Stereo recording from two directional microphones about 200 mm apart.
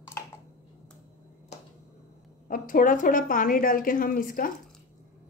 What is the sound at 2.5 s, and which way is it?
Speech, 45° left (ahead or behind).